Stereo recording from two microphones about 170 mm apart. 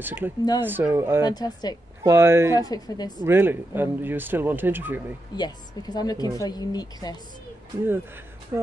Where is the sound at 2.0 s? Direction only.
15° right (ahead or behind).